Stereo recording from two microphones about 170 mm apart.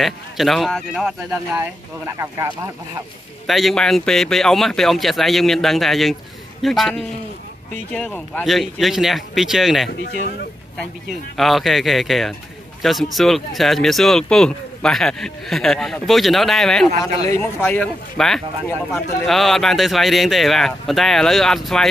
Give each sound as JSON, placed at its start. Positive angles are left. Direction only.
{"t": 0.0, "sound": "speech", "side_deg": 0}
{"t": 1.3, "sound": "speech", "side_deg": -15}
{"t": 3.4, "sound": "speech", "side_deg": 0}
{"t": 11.3, "sound": "speech", "side_deg": 0}
{"t": 17.3, "sound": "speech", "side_deg": 15}